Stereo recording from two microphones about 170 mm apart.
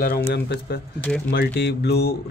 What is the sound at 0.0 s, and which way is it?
Speech, 60° left (ahead or behind).